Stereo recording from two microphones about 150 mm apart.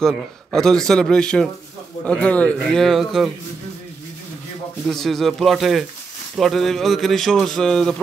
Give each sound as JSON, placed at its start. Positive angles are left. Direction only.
{"t": 0.0, "sound": "a man's voice", "side_deg": 5}
{"t": 4.8, "sound": "a man's voice", "side_deg": 0}